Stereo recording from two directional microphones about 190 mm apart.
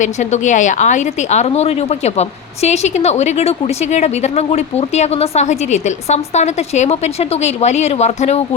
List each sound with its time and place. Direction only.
0.0 s speech: 40° left (ahead or behind)